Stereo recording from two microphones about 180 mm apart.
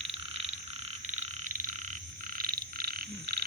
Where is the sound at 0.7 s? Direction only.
40° right (ahead or behind); by 3.0 s 60° right (ahead or behind).